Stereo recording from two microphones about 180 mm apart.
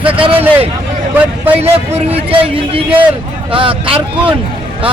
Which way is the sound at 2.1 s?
30° right (ahead or behind).